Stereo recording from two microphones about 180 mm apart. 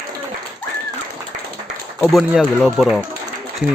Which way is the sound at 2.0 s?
Centre (ahead or behind).